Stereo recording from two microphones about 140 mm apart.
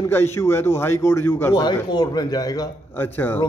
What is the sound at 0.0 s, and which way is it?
A man's voice, 15° left (ahead or behind).